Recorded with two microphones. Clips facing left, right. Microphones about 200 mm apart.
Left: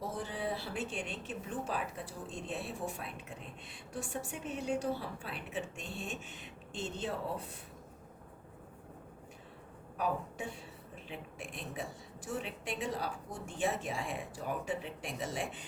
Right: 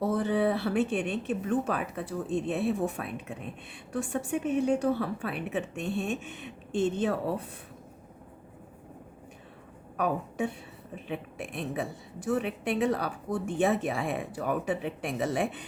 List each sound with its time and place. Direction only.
0.0 s speech: 65° right (ahead or behind)
10.0 s speech: 60° right (ahead or behind)